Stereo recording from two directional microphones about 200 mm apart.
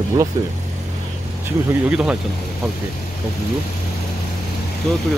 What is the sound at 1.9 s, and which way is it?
Speech, 5° right (ahead or behind).